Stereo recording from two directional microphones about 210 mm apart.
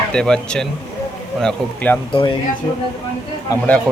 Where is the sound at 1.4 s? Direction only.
5° left (ahead or behind).